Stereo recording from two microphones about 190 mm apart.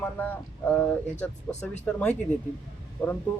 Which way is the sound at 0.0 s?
10° left (ahead or behind).